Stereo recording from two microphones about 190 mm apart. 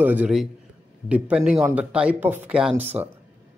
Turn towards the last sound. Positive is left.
turn(degrees=-10)  # may be behind; listen again after turning